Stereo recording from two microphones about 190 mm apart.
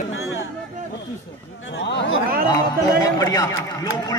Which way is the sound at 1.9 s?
65° left (ahead or behind).